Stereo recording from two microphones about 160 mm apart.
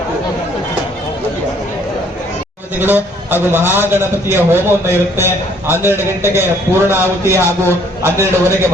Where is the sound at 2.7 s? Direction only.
15° right (ahead or behind).